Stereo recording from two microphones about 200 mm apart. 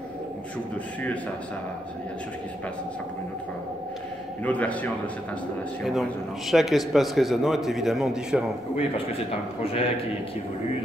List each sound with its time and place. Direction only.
4.5 s a man's voice: 5° left (ahead or behind)
6.5 s a man's voice: centre (ahead or behind)
9.6 s a man's voice: 30° left (ahead or behind)